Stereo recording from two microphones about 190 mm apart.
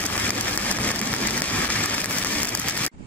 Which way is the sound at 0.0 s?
10° left (ahead or behind).